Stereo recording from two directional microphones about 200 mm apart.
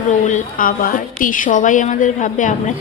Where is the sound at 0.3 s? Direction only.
40° left (ahead or behind).